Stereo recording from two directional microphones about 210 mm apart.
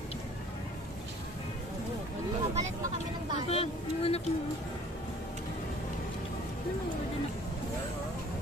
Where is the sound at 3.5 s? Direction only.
30° left (ahead or behind).